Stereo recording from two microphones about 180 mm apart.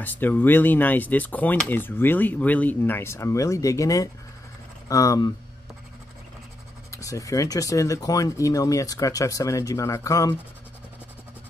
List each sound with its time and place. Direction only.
0.0 s speech: 10° left (ahead or behind)
6.9 s speech: 20° left (ahead or behind)